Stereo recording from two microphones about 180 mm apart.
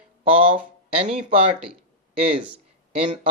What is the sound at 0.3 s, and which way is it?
Speech, 30° right (ahead or behind).